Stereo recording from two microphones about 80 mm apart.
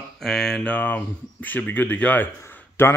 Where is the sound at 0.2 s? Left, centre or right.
Centre.